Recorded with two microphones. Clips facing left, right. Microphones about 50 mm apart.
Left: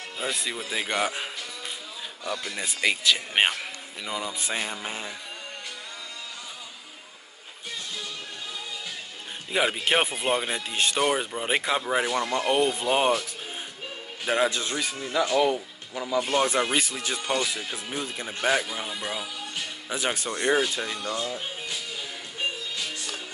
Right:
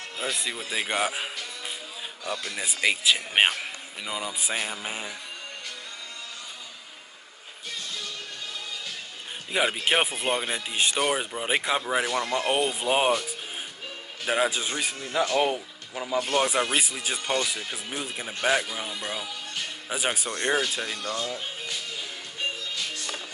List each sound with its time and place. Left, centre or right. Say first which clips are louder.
0.2 s a man's voice: left 1 dB; centre
9.5 s a man's voice: even; centre
14.2 s a man's voice: left 1 dB; centre; by 15.6 s right
15.9 s a man's voice: left 1 dB; centre
19.9 s a man's voice: even; centre
20.2 s speech: left 4 dB; centre